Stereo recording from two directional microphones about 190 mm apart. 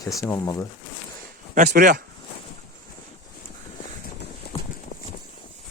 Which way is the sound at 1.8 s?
45° right (ahead or behind).